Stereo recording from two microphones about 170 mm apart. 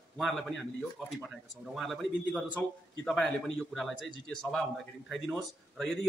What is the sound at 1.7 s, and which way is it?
Speech, centre (ahead or behind).